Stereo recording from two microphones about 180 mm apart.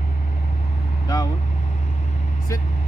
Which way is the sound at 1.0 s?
20° left (ahead or behind).